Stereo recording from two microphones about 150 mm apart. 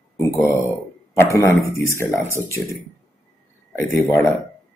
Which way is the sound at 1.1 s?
20° left (ahead or behind).